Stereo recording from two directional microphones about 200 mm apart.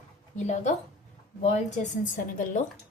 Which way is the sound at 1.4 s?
35° left (ahead or behind).